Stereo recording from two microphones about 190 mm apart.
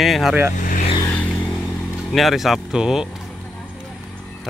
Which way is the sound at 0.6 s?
45° left (ahead or behind).